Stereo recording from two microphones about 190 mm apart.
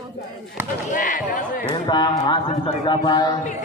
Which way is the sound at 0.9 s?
45° left (ahead or behind).